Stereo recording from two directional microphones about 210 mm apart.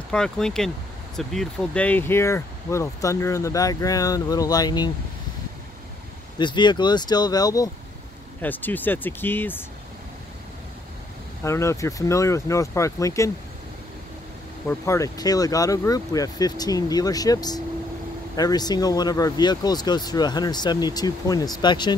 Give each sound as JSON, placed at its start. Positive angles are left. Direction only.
{"t": 0.1, "sound": "speech", "side_deg": 5}
{"t": 6.3, "sound": "speech", "side_deg": 20}
{"t": 11.4, "sound": "speech", "side_deg": 15}
{"t": 14.7, "sound": "speech", "side_deg": 15}